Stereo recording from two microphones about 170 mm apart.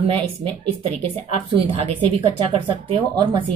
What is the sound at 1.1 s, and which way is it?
Speech, 35° right (ahead or behind).